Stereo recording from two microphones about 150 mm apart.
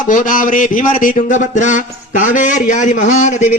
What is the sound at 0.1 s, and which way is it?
Mantra, 60° left (ahead or behind).